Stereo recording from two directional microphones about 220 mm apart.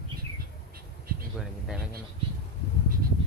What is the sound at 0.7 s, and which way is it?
Insect, 45° right (ahead or behind).